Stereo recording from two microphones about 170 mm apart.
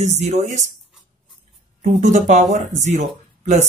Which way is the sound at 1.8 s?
45° right (ahead or behind).